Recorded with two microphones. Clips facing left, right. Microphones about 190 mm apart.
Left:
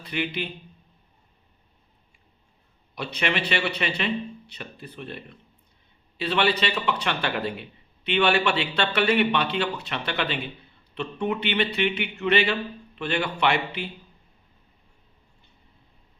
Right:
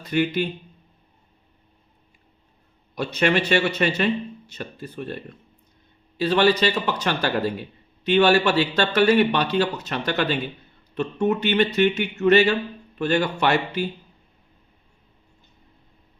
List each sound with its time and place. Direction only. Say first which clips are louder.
0.0 s speech: right 7 dB; 45° right (ahead or behind)
2.9 s a man's voice: right 6 dB; 45° right (ahead or behind)